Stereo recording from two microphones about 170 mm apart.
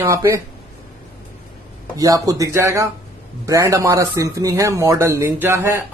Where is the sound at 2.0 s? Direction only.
20° right (ahead or behind).